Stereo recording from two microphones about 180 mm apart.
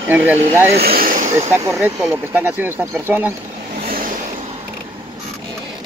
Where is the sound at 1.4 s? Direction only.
15° right (ahead or behind).